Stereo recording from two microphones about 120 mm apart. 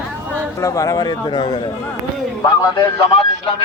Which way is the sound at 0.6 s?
25° left (ahead or behind).